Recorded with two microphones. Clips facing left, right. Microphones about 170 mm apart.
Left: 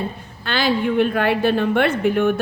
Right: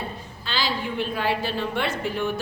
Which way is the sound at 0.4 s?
60° left (ahead or behind).